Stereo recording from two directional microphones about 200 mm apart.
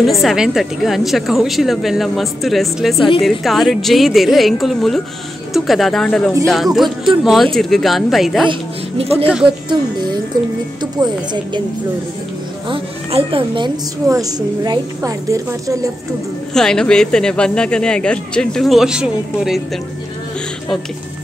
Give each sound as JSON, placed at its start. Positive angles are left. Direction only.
{"t": 0.0, "sound": "speech", "side_deg": 0}
{"t": 8.5, "sound": "speech", "side_deg": -30}
{"t": 12.6, "sound": "a woman's voice", "side_deg": -25}
{"t": 16.5, "sound": "speech", "side_deg": 5}